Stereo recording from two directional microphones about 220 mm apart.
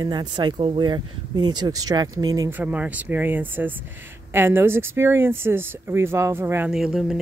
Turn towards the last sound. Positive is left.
turn(degrees=0)  # may be behind; listen again after turning